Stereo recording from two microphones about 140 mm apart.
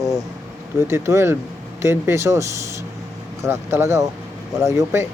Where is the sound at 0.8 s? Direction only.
20° right (ahead or behind).